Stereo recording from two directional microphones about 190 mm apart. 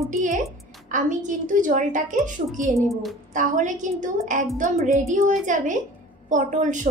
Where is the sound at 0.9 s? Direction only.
40° right (ahead or behind).